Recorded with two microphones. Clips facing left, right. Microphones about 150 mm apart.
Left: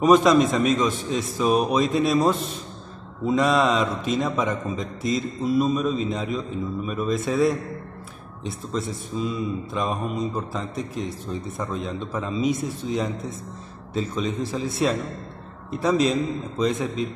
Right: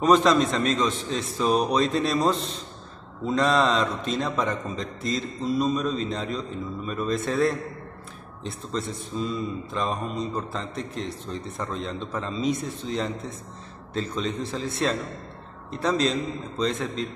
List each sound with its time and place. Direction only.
0.0 s a man's voice: 10° left (ahead or behind)